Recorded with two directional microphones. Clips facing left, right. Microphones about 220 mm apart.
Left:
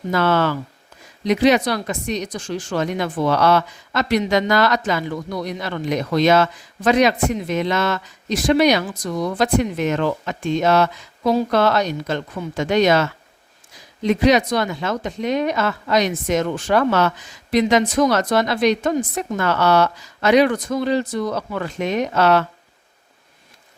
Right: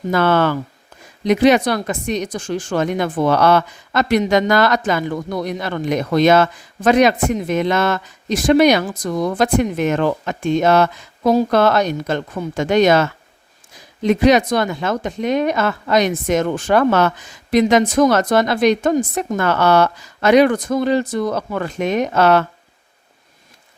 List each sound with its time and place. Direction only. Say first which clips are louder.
0.1 s speech: right 3 dB; 55° right (ahead or behind)